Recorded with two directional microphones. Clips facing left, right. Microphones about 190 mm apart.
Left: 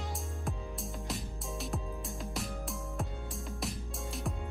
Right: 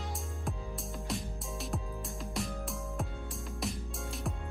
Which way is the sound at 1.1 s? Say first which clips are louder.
Right 4 dB; centre (ahead or behind).